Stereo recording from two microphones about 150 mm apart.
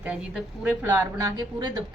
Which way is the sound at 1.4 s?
30° right (ahead or behind).